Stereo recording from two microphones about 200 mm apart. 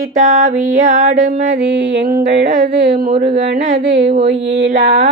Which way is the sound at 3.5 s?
65° right (ahead or behind).